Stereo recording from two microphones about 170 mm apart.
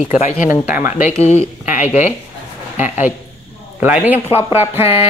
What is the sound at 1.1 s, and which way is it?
Speech, 40° left (ahead or behind).